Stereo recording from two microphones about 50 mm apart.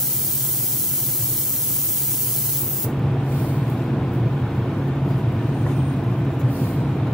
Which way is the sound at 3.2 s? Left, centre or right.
Left.